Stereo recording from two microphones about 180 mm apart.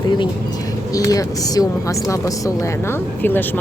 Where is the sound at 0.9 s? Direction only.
20° left (ahead or behind).